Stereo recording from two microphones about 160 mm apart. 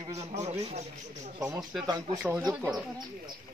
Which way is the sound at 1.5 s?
5° right (ahead or behind).